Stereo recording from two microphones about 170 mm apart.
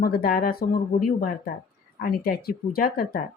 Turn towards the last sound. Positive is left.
turn(degrees=60)  # may be behind; listen again after turning